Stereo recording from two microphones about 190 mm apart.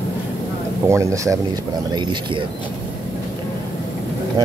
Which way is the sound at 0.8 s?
15° right (ahead or behind).